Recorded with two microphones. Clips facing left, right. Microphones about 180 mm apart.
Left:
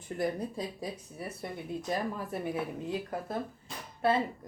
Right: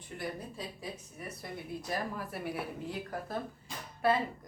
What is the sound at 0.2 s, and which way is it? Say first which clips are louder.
Speech: left 7 dB; 40° left (ahead or behind).